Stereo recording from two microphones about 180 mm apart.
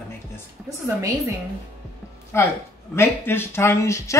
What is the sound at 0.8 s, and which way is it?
Speech, 15° right (ahead or behind).